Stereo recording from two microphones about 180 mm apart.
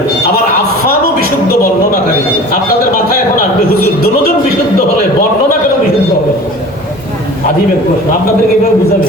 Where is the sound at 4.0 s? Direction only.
60° left (ahead or behind).